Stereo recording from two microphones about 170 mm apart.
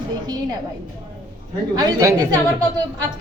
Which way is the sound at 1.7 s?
20° right (ahead or behind).